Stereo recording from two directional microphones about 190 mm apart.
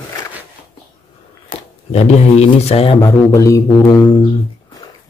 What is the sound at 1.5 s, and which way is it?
Speech, 35° left (ahead or behind).